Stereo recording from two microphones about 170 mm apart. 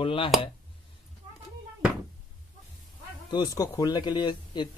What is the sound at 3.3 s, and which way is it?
Speech, 25° left (ahead or behind).